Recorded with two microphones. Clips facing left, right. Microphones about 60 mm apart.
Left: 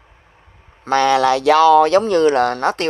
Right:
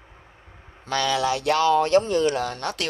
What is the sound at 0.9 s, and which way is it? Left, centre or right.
Speech, left.